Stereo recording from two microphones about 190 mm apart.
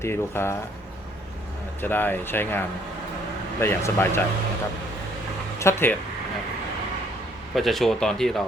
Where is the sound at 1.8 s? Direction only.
10° left (ahead or behind).